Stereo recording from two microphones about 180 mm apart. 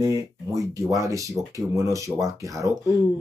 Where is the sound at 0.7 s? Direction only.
15° right (ahead or behind).